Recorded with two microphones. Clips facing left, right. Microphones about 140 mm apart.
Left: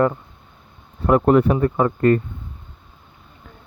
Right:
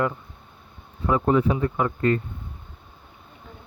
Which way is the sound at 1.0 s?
65° left (ahead or behind).